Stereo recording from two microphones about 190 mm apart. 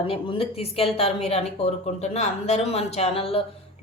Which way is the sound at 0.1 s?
30° left (ahead or behind).